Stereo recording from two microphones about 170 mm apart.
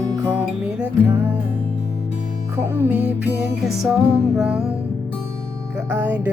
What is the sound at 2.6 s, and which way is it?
Music, 10° right (ahead or behind).